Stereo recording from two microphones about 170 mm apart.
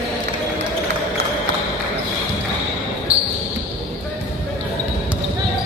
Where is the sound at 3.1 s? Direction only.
35° right (ahead or behind).